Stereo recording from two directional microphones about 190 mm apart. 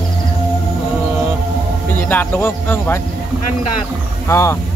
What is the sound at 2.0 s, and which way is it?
Speech, 10° left (ahead or behind).